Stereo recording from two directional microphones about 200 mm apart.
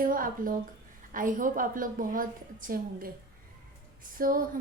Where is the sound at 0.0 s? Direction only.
45° right (ahead or behind).